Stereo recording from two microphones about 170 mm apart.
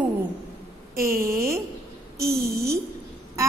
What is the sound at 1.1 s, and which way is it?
Mantra, 60° right (ahead or behind).